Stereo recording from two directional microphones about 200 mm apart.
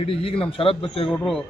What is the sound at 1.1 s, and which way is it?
Speech, centre (ahead or behind).